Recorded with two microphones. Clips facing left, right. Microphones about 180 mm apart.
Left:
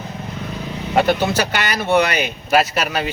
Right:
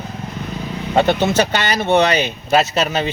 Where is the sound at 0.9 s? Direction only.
25° right (ahead or behind).